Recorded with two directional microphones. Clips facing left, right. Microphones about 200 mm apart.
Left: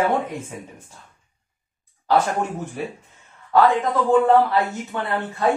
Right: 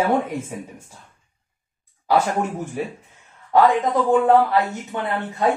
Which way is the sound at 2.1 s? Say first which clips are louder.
Even; 10° right (ahead or behind).